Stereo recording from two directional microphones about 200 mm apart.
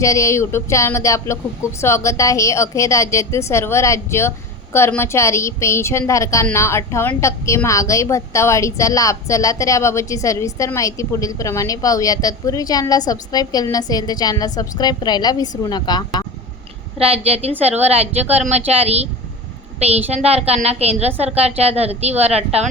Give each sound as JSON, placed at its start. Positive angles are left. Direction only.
{"t": 0.0, "sound": "a woman's voice", "side_deg": 15}
{"t": 17.0, "sound": "a woman's voice", "side_deg": -30}